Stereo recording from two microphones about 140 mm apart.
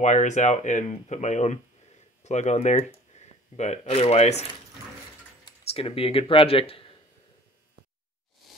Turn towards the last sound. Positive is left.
turn(degrees=40)  # may be behind; listen again after turning